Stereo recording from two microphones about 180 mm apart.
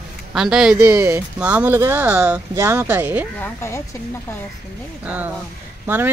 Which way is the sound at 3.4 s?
15° left (ahead or behind).